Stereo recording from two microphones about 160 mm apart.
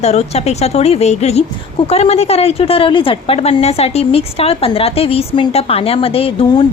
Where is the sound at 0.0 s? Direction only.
40° left (ahead or behind).